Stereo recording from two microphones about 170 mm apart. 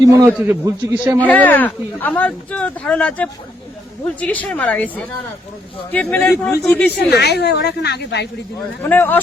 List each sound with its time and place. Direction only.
0.0 s a man's voice: 20° right (ahead or behind)
0.3 s a man's voice: 10° right (ahead or behind)
1.2 s speech: 10° left (ahead or behind)
7.1 s a woman's voice: 75° left (ahead or behind)
8.8 s speech: 10° left (ahead or behind)